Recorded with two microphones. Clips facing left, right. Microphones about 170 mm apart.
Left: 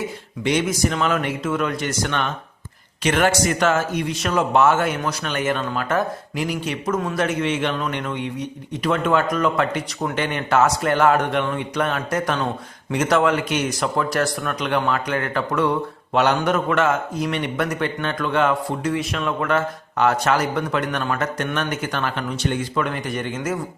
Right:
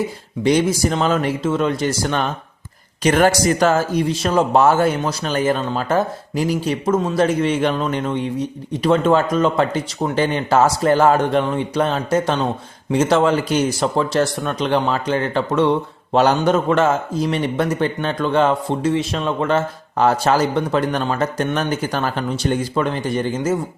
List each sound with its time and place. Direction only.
0.4 s speech: 35° right (ahead or behind)